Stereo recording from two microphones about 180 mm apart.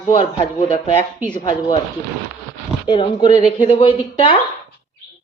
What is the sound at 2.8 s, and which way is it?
Speech, 25° left (ahead or behind).